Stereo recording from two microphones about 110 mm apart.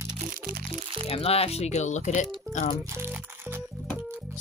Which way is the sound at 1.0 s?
65° left (ahead or behind).